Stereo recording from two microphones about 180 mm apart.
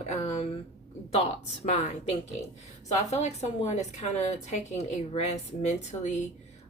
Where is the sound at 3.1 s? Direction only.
40° left (ahead or behind).